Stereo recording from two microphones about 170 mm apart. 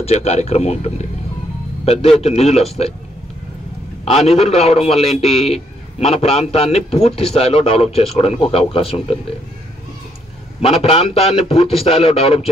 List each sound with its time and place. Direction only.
0.0 s a man's voice: 35° left (ahead or behind)
4.0 s a man's voice: 35° left (ahead or behind)
10.6 s a man's voice: 35° left (ahead or behind)